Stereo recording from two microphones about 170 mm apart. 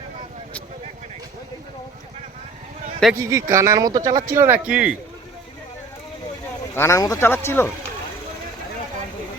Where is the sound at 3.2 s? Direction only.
20° right (ahead or behind).